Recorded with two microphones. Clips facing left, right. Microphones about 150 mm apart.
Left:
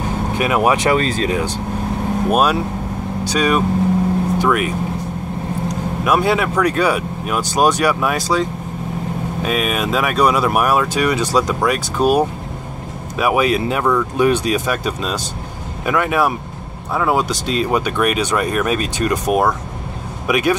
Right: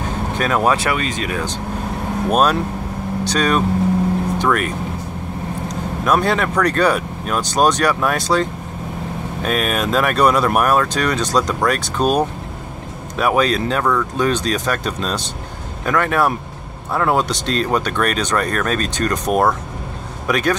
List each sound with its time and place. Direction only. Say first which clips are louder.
0.4 s speech: left 1 dB; 15° left (ahead or behind)
0.8 s speech: left 5 dB; 35° left (ahead or behind)
2.3 s speech: right 2 dB; 5° left (ahead or behind)
6.0 s speech: left 1 dB; 5° left (ahead or behind)